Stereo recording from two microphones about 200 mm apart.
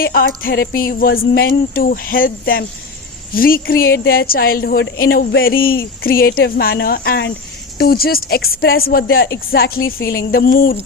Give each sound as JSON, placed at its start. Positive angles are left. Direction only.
{"t": 0.0, "sound": "a woman's voice", "side_deg": 45}